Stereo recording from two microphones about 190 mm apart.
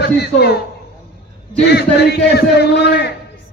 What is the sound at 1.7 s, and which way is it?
A man's voice, 60° left (ahead or behind).